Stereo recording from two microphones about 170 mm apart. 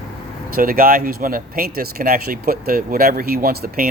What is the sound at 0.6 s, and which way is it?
Speech, 60° right (ahead or behind).